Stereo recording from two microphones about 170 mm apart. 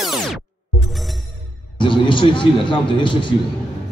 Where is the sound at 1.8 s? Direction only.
30° left (ahead or behind).